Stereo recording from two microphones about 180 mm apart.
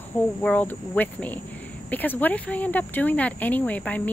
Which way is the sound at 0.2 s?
10° left (ahead or behind).